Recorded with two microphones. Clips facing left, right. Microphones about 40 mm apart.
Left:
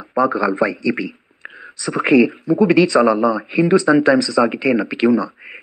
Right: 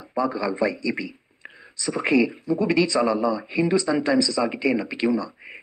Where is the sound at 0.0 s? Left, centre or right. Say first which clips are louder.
Left 8 dB; left.